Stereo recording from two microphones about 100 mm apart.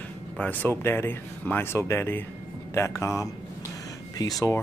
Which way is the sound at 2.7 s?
30° left (ahead or behind).